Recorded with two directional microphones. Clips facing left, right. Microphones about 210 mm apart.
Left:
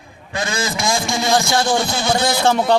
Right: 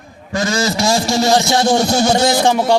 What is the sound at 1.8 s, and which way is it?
Speech, 45° right (ahead or behind).